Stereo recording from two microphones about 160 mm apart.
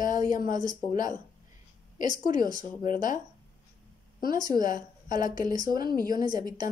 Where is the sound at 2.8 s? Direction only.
55° left (ahead or behind).